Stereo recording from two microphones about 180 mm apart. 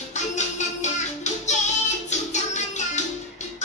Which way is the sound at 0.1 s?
40° left (ahead or behind).